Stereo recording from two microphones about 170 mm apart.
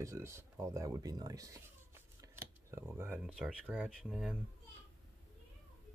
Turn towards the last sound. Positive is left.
turn(degrees=-5)  # may be behind; listen again after turning